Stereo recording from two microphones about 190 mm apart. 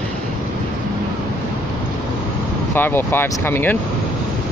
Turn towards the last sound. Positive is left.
turn(degrees=10)  # may be behind; listen again after turning